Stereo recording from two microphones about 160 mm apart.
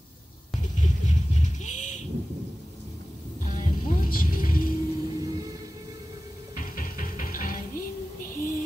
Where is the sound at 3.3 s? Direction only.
50° left (ahead or behind).